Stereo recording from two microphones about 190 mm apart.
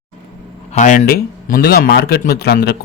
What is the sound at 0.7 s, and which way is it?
A man's voice, 40° left (ahead or behind).